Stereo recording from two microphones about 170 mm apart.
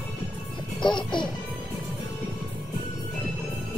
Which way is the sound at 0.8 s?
25° left (ahead or behind).